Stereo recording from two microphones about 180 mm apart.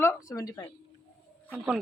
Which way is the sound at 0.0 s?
15° left (ahead or behind).